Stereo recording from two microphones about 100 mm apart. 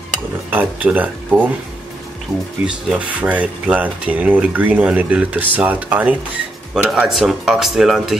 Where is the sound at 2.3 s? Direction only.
Centre (ahead or behind).